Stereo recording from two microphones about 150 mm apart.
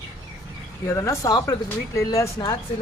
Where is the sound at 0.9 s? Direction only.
20° left (ahead or behind).